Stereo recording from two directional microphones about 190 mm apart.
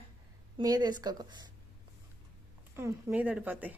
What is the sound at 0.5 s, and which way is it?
Speech, 20° right (ahead or behind).